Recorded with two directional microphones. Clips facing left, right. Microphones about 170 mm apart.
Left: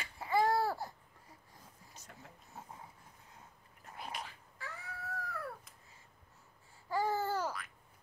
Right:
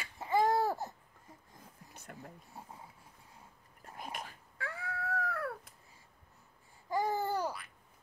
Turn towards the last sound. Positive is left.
turn(degrees=-15)  # may be behind; listen again after turning